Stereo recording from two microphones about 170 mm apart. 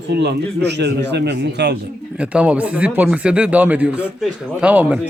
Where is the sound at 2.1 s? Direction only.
5° right (ahead or behind).